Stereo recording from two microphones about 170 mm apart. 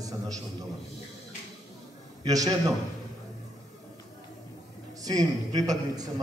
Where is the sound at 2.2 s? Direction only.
25° right (ahead or behind).